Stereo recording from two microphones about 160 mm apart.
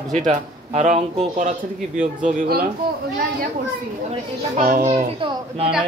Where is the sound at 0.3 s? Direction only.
50° right (ahead or behind).